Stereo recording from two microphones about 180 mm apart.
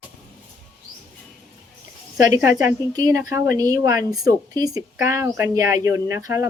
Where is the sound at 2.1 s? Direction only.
15° right (ahead or behind).